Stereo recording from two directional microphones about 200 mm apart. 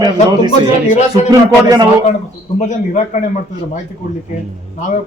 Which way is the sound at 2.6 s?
35° left (ahead or behind).